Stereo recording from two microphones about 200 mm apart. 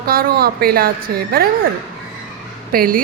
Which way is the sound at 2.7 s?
45° right (ahead or behind).